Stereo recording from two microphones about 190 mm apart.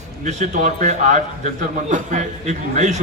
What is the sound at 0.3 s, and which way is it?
A man's voice, 40° right (ahead or behind).